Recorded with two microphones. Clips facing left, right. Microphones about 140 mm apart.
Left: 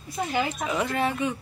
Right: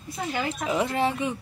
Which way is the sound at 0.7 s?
25° right (ahead or behind).